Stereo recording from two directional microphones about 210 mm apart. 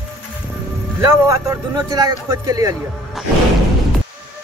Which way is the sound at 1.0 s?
15° right (ahead or behind).